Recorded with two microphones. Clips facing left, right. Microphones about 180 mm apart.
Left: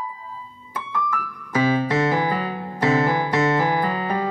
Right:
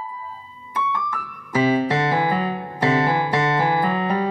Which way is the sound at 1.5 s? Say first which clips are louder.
Right 1 dB; 30° right (ahead or behind).